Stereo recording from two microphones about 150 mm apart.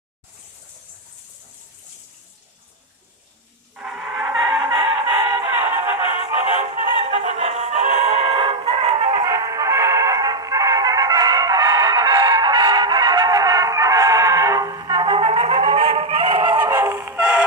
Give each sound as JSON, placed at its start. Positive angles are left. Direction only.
{"t": 3.7, "sound": "a sound", "side_deg": -5}
{"t": 4.6, "sound": "music", "side_deg": -30}
{"t": 5.4, "sound": "music", "side_deg": -15}
{"t": 7.0, "sound": "music", "side_deg": -45}
{"t": 8.3, "sound": "music", "side_deg": -40}
{"t": 9.2, "sound": "music", "side_deg": -20}
{"t": 16.6, "sound": "music", "side_deg": -15}